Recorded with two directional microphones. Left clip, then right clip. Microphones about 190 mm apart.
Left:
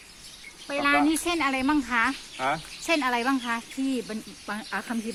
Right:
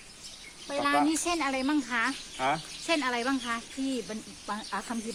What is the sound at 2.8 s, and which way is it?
Speech, 60° left (ahead or behind).